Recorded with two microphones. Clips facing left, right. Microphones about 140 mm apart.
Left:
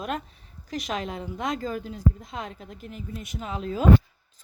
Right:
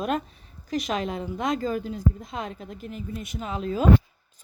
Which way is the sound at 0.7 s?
25° right (ahead or behind).